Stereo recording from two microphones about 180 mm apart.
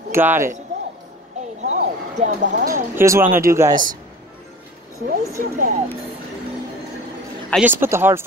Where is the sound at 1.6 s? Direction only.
40° right (ahead or behind).